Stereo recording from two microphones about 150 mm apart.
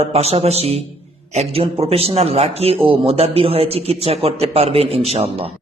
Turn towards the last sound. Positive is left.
turn(degrees=-40)  # may be behind; listen again after turning